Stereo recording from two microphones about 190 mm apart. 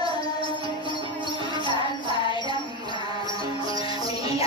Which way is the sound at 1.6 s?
25° left (ahead or behind).